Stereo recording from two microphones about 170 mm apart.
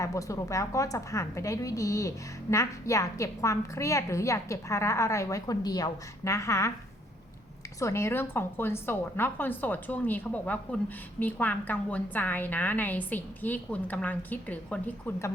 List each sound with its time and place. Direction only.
0.0 s a woman's voice: 20° left (ahead or behind)
7.8 s a woman's voice: 15° left (ahead or behind)